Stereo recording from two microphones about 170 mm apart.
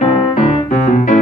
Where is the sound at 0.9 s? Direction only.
50° left (ahead or behind).